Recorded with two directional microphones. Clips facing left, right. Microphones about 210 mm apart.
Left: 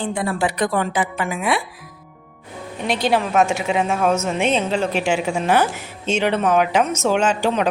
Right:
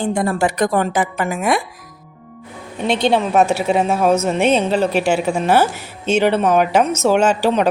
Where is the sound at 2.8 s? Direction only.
25° right (ahead or behind).